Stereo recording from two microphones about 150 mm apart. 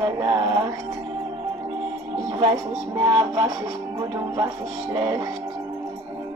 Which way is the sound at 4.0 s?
20° right (ahead or behind).